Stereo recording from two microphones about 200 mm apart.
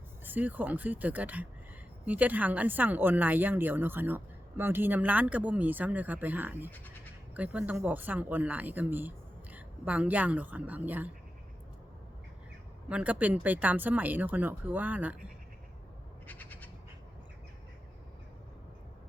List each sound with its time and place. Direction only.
0.3 s speech: 10° right (ahead or behind)
6.7 s speech: 10° left (ahead or behind)
7.3 s speech: 5° right (ahead or behind)
12.9 s speech: 5° right (ahead or behind)
16.2 s bird: 10° left (ahead or behind)